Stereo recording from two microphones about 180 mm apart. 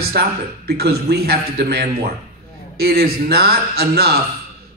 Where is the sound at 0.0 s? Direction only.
60° right (ahead or behind).